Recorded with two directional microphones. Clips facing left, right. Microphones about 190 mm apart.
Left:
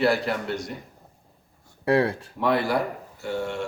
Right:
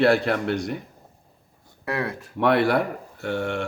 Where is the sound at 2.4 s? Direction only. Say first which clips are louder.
Right 4 dB; 65° right (ahead or behind).